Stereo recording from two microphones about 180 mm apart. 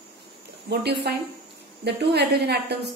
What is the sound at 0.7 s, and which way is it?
A woman's voice, 65° right (ahead or behind).